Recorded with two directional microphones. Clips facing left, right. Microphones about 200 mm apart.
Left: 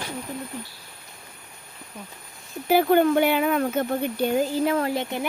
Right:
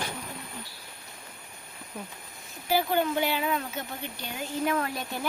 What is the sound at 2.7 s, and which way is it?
Speech, 55° left (ahead or behind).